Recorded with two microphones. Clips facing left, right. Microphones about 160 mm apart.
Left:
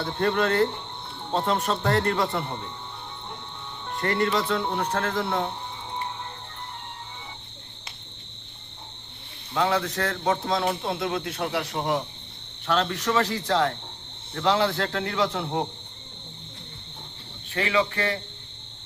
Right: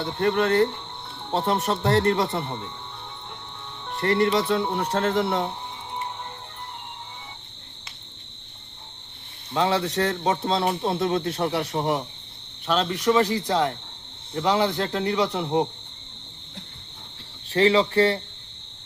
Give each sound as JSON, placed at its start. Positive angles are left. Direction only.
{"t": 0.2, "sound": "speech", "side_deg": -20}
{"t": 4.0, "sound": "speech", "side_deg": -25}
{"t": 4.4, "sound": "speech", "side_deg": -10}
{"t": 9.6, "sound": "a man's voice", "side_deg": -30}
{"t": 12.6, "sound": "speech", "side_deg": -15}
{"t": 17.5, "sound": "a man's voice", "side_deg": -35}